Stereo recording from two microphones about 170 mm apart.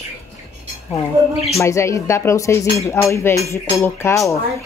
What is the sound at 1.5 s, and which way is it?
Speech, 15° left (ahead or behind).